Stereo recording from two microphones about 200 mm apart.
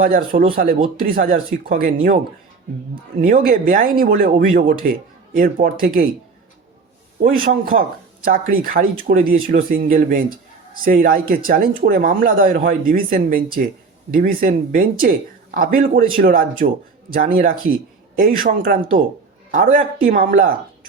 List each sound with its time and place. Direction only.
0.0 s speech: 45° right (ahead or behind)
3.2 s speech: 45° right (ahead or behind)
7.2 s speech: 40° right (ahead or behind)